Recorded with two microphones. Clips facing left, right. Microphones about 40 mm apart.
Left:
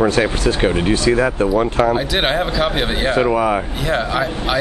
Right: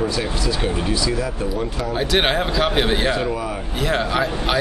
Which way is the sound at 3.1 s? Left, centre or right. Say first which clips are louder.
Left 7 dB; left.